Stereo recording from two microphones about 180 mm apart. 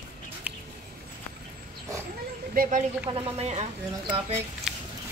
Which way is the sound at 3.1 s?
35° right (ahead or behind).